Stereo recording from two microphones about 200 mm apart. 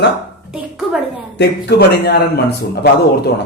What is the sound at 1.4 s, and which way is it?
A man's voice, 55° left (ahead or behind).